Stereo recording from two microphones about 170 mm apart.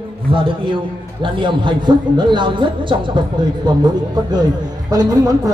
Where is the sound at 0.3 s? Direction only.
30° right (ahead or behind).